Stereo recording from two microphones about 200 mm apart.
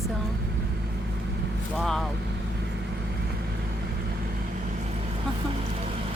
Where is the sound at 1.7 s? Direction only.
Centre (ahead or behind).